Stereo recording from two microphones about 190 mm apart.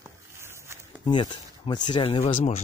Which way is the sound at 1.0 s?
25° left (ahead or behind).